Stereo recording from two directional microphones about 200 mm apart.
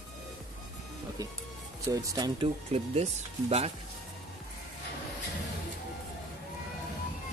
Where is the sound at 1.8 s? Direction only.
15° right (ahead or behind).